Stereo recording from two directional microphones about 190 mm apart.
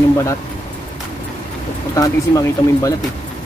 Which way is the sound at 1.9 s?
20° left (ahead or behind).